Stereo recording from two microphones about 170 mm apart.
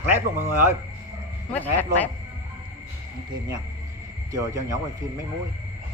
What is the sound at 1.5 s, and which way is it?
Speech, 10° left (ahead or behind).